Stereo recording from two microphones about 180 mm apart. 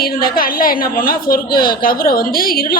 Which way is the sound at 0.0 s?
55° left (ahead or behind).